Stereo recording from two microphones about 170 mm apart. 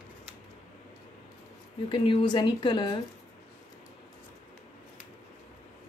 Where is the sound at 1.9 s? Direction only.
30° left (ahead or behind).